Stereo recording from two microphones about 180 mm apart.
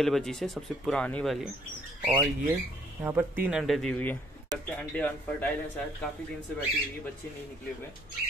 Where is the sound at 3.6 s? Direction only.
Centre (ahead or behind).